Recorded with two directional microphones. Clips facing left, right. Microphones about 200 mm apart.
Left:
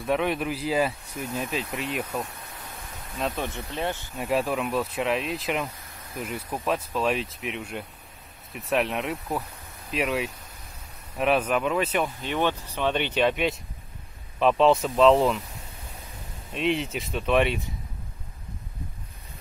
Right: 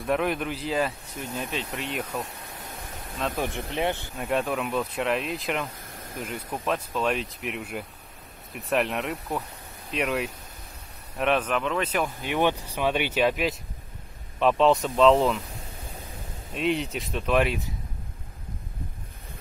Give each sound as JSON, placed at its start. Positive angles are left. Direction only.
{"t": 0.0, "sound": "speech", "side_deg": 0}
{"t": 3.3, "sound": "speech", "side_deg": -15}
{"t": 4.2, "sound": "speech", "side_deg": 0}
{"t": 12.2, "sound": "speech", "side_deg": -10}
{"t": 16.5, "sound": "speech", "side_deg": 0}